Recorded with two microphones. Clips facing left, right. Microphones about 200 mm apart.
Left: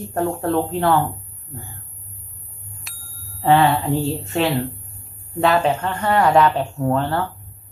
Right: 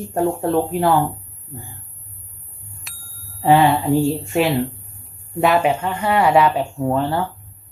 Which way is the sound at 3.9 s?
15° right (ahead or behind).